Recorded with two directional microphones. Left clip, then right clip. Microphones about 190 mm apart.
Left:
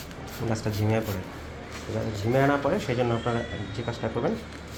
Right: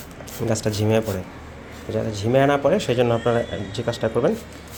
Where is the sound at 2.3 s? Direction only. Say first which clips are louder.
Right 6 dB; 60° right (ahead or behind).